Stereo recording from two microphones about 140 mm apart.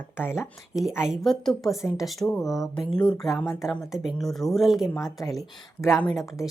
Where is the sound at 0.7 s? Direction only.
5° right (ahead or behind).